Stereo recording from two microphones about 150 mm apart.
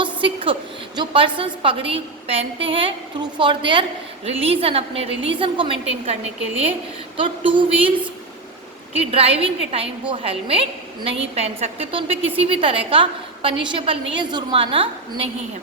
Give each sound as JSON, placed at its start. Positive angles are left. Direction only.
{"t": 0.0, "sound": "a sound", "side_deg": -35}
{"t": 0.9, "sound": "a woman's voice", "side_deg": -35}
{"t": 7.2, "sound": "a woman's voice", "side_deg": -35}
{"t": 9.1, "sound": "a woman's voice", "side_deg": -40}